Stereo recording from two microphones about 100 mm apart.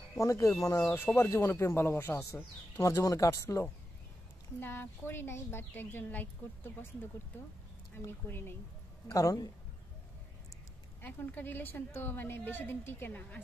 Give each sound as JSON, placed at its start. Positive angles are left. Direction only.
{"t": 0.2, "sound": "speech", "side_deg": 30}
{"t": 0.9, "sound": "a woman's voice", "side_deg": 20}
{"t": 8.0, "sound": "a woman's voice", "side_deg": 20}
{"t": 9.1, "sound": "speech", "side_deg": 35}
{"t": 11.0, "sound": "a woman's voice", "side_deg": 20}